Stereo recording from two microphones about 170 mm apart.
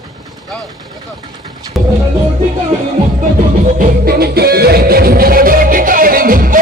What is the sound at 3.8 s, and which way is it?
Music, 65° right (ahead or behind).